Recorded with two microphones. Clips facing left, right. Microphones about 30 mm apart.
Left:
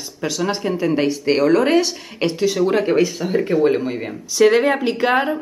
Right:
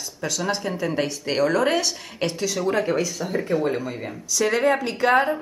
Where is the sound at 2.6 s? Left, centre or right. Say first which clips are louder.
Left 5 dB; left.